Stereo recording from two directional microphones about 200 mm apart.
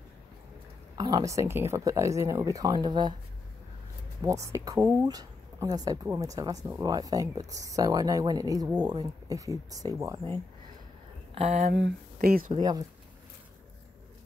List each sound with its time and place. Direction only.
0.9 s speech: 20° right (ahead or behind)
4.2 s speech: 15° right (ahead or behind)
11.3 s speech: 30° right (ahead or behind)
11.7 s speech: 50° right (ahead or behind)
12.5 s speech: 20° right (ahead or behind)